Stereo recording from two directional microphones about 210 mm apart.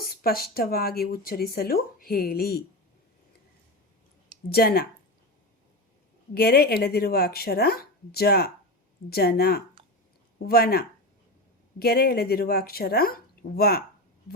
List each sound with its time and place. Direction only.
0.0 s speech: 45° left (ahead or behind)
4.4 s speech: 45° left (ahead or behind)
6.3 s speech: 50° left (ahead or behind)